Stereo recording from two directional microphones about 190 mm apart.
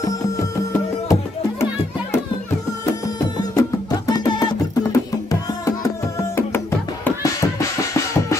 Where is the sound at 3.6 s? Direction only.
20° left (ahead or behind).